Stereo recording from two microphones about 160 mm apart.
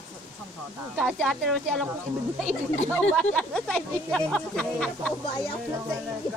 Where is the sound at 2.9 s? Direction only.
5° left (ahead or behind).